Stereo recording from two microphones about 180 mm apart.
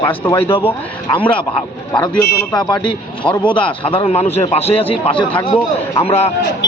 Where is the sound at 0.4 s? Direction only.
30° left (ahead or behind).